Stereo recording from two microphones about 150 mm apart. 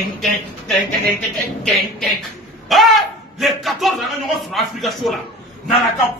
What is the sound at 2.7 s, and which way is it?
Speech, centre (ahead or behind).